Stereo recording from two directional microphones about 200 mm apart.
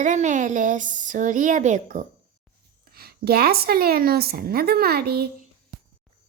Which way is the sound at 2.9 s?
50° right (ahead or behind).